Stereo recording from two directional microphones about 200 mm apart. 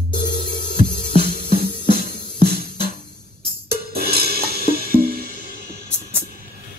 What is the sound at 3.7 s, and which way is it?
Music, 50° right (ahead or behind).